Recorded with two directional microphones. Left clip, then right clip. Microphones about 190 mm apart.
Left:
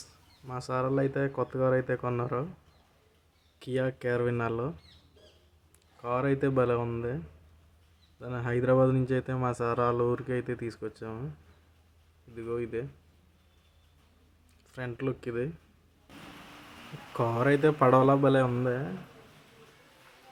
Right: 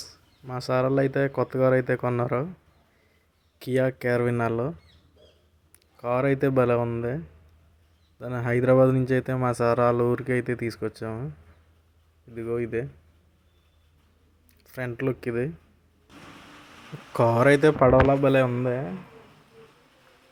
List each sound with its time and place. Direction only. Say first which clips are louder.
0.0 s speech: right 7 dB; 25° right (ahead or behind)
3.6 s speech: right 6 dB; 25° right (ahead or behind)
6.0 s speech: right 5 dB; 20° right (ahead or behind)
8.2 s speech: right 6 dB; 20° right (ahead or behind)
12.3 s speech: right 5 dB; 20° right (ahead or behind)
14.6 s speech: right 6 dB; 20° right (ahead or behind)
17.2 s speech: right 7 dB; 25° right (ahead or behind)
17.7 s a man's voice: right 4 dB; 10° right (ahead or behind)